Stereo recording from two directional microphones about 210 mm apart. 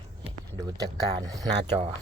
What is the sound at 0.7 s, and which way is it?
Speech, 15° right (ahead or behind).